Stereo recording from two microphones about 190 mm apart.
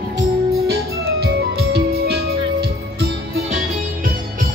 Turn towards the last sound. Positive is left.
turn(degrees=-55)  # may be behind; listen again after turning